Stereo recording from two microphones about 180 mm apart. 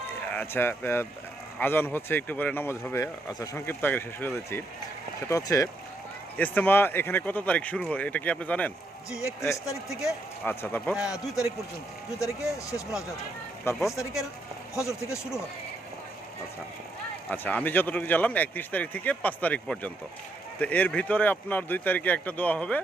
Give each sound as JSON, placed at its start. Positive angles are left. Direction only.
{"t": 0.3, "sound": "speech", "side_deg": 10}
{"t": 12.2, "sound": "speech", "side_deg": 15}
{"t": 17.2, "sound": "speech", "side_deg": 10}